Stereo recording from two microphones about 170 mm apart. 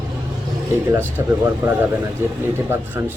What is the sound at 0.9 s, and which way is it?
Speech, 10° right (ahead or behind).